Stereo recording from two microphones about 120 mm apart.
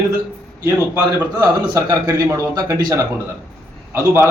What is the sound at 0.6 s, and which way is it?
A man's voice, 25° right (ahead or behind).